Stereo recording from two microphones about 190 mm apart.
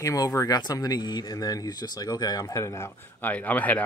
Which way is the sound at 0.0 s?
20° left (ahead or behind).